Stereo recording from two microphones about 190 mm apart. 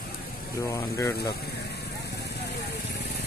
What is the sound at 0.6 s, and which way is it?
Speech, 15° left (ahead or behind).